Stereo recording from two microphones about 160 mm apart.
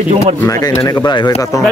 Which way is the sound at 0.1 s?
45° right (ahead or behind).